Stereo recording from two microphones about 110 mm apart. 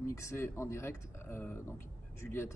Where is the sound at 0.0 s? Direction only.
25° left (ahead or behind).